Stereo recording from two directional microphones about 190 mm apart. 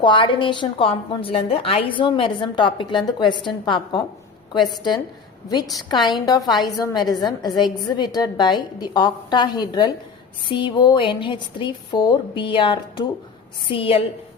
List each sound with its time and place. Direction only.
0.0 s a woman's voice: 25° left (ahead or behind)
5.7 s a woman's voice: 20° left (ahead or behind)